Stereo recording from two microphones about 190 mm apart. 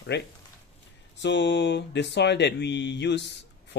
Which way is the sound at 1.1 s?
70° left (ahead or behind).